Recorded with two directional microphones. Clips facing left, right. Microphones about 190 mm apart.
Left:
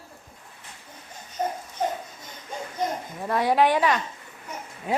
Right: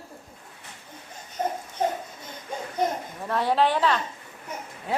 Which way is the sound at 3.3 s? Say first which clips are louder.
Left 2 dB; 10° left (ahead or behind).